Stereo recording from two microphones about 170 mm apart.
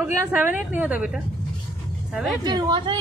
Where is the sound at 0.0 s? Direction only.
10° right (ahead or behind).